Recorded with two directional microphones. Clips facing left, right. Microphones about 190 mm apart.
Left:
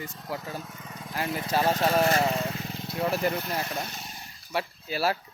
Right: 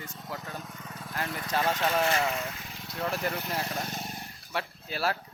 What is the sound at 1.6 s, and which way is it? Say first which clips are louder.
Speech: left 4 dB; 35° left (ahead or behind).